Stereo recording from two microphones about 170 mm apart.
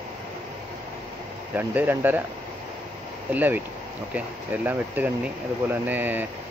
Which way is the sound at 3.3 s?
10° right (ahead or behind).